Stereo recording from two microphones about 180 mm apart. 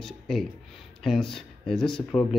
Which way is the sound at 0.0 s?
Centre (ahead or behind).